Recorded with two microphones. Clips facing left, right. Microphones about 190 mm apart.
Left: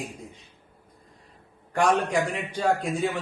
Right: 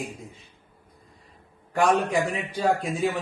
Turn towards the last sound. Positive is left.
turn(degrees=0)  # may be behind; listen again after turning